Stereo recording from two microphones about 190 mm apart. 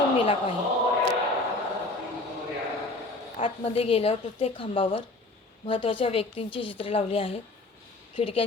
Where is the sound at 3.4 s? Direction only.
30° left (ahead or behind).